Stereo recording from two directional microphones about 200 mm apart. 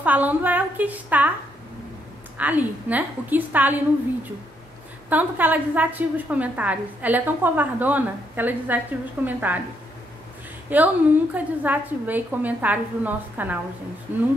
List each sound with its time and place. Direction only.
0.0 s a woman's voice: 10° right (ahead or behind)
2.3 s a woman's voice: 10° right (ahead or behind)
5.1 s a woman's voice: 10° right (ahead or behind)
10.7 s a woman's voice: 10° right (ahead or behind)